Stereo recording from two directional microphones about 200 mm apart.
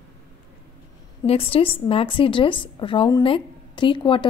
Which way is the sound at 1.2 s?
30° left (ahead or behind).